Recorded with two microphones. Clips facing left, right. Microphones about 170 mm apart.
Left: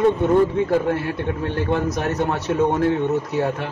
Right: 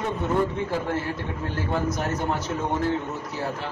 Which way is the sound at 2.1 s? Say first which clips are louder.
Left 5 dB; 70° left (ahead or behind).